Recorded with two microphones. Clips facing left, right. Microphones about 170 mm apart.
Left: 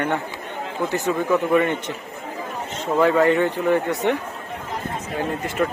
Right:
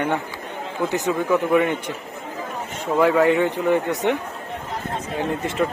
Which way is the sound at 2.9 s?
5° right (ahead or behind).